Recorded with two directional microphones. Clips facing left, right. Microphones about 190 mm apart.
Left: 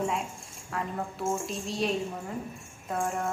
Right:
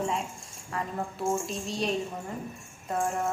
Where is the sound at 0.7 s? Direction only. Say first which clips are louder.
Even; centre (ahead or behind).